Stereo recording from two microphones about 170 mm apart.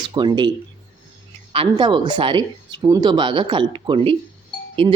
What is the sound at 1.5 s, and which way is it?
Speech, 30° right (ahead or behind).